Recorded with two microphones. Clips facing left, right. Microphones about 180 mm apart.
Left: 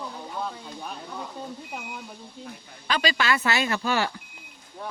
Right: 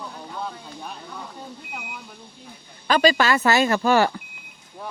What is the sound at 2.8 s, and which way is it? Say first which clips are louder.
A woman's voice: right 7 dB; 45° right (ahead or behind).